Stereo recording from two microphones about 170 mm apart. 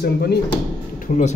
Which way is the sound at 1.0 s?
45° left (ahead or behind).